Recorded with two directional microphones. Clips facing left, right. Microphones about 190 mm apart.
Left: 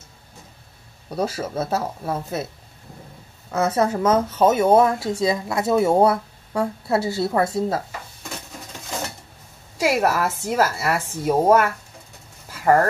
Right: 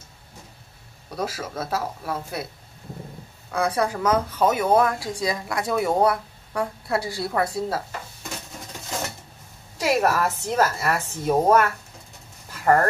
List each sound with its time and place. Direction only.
1.1 s speech: 30° left (ahead or behind)
3.5 s speech: 25° left (ahead or behind)
9.8 s a woman's voice: 10° left (ahead or behind)